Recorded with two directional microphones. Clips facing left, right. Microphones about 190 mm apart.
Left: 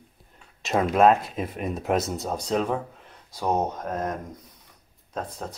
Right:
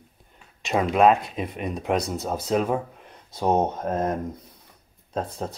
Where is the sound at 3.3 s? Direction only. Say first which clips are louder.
Right 3 dB; 25° right (ahead or behind).